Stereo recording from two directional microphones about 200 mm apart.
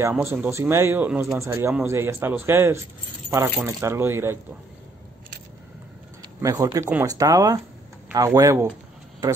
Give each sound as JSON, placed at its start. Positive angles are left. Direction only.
{"t": 0.2, "sound": "speech", "side_deg": -10}
{"t": 6.2, "sound": "speech", "side_deg": -15}